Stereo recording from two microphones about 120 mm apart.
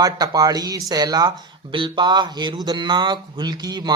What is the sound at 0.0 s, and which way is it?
Speech, 30° right (ahead or behind).